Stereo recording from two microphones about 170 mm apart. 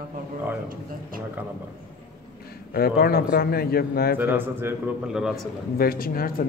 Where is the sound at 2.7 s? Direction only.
65° left (ahead or behind).